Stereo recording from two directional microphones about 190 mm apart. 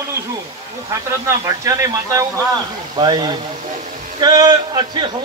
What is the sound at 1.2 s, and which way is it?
A man's voice, 15° right (ahead or behind).